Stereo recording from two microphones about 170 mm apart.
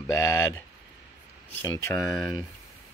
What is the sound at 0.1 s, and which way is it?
Speech, 15° left (ahead or behind).